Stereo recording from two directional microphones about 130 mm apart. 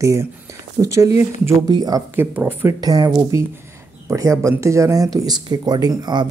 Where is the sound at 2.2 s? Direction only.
15° right (ahead or behind).